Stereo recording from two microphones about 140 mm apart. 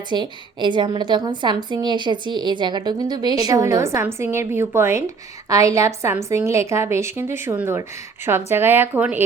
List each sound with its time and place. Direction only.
0.1 s a woman's voice: 35° right (ahead or behind); by 9.2 s 10° right (ahead or behind)